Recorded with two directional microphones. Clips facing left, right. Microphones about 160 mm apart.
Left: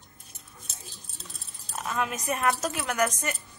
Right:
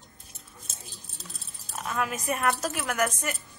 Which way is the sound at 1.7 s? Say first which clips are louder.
Even; centre (ahead or behind).